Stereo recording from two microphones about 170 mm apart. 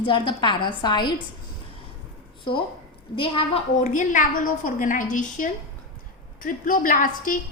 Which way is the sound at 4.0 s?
50° left (ahead or behind).